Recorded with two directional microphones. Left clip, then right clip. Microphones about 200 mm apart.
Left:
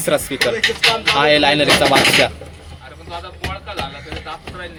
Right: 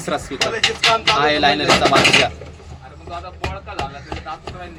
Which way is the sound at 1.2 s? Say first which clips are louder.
Left 3 dB; 45° left (ahead or behind).